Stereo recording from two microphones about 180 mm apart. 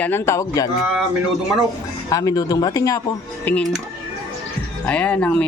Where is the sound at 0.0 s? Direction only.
15° left (ahead or behind).